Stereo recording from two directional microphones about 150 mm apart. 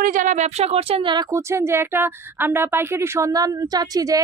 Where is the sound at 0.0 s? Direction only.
60° right (ahead or behind); by 1.2 s 35° right (ahead or behind).